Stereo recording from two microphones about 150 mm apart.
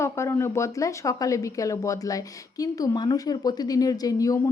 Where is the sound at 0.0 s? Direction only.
20° left (ahead or behind).